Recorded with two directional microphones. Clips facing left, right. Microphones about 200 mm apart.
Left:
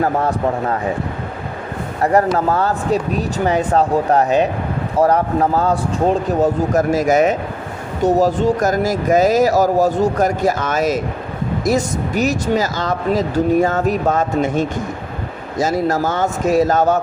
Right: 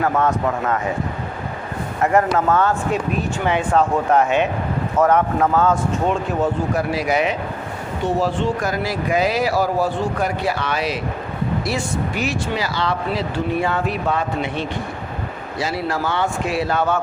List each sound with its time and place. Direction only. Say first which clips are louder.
0.0 s speech: left 2 dB; 35° left (ahead or behind)
2.0 s speech: left 2 dB; 35° left (ahead or behind)